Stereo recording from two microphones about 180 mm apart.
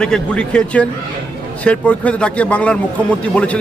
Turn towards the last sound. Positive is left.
turn(degrees=5)  # may be behind; listen again after turning